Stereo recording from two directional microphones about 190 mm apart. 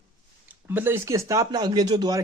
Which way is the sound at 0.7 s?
10° right (ahead or behind).